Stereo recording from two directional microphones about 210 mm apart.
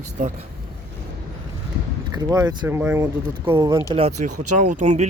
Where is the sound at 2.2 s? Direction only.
15° right (ahead or behind).